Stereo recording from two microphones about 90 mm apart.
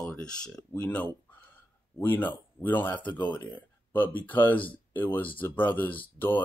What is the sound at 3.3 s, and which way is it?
Speech, 15° left (ahead or behind).